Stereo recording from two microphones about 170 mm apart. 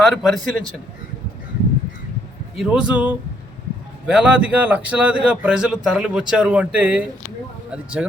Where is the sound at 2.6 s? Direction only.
5° right (ahead or behind).